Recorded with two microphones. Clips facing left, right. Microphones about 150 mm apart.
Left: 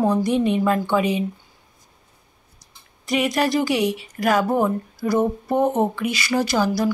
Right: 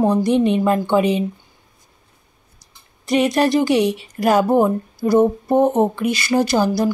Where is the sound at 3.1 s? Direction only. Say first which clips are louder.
Right 4 dB; 30° right (ahead or behind).